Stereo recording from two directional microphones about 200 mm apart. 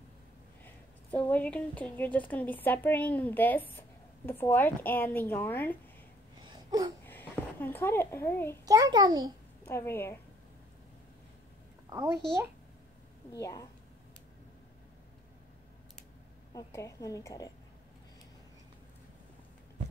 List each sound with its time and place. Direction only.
1.1 s a woman's voice: 10° left (ahead or behind)
6.4 s a sound: 20° right (ahead or behind)
7.1 s a child's voice: 10° left (ahead or behind)
8.6 s a child's voice: 20° right (ahead or behind)
9.7 s a woman's voice: 10° left (ahead or behind)
13.3 s a woman's voice: 15° left (ahead or behind)
16.5 s a woman's voice: 15° left (ahead or behind)